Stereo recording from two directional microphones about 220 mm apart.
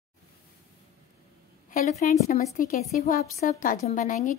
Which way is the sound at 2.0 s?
40° left (ahead or behind).